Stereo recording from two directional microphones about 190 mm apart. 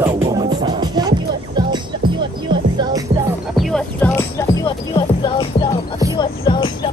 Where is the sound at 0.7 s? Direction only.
20° right (ahead or behind).